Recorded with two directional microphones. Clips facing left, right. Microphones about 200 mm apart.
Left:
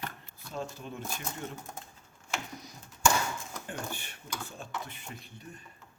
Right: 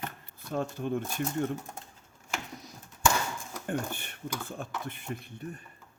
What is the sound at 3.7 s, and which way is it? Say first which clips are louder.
Speech: right 7 dB; 55° right (ahead or behind).